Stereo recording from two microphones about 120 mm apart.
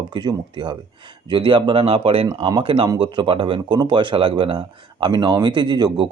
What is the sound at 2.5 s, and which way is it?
Speech, 40° right (ahead or behind).